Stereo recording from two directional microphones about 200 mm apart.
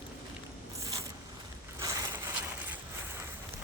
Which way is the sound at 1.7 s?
15° right (ahead or behind).